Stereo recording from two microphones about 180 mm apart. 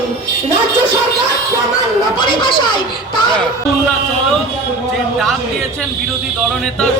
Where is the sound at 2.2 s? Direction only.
25° left (ahead or behind).